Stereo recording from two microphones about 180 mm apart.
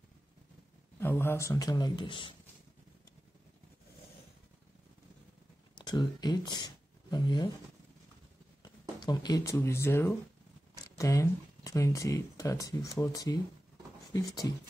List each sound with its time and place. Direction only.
0.9 s speech: 10° left (ahead or behind)
5.8 s speech: 25° left (ahead or behind)
8.6 s speech: 20° left (ahead or behind)